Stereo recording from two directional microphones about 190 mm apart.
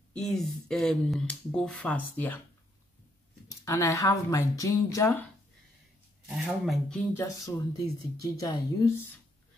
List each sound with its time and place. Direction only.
0.2 s speech: 5° left (ahead or behind)
3.6 s speech: 15° left (ahead or behind)
6.2 s speech: centre (ahead or behind); by 8.9 s 15° left (ahead or behind)